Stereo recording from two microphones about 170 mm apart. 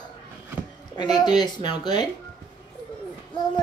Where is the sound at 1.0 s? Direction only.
25° left (ahead or behind).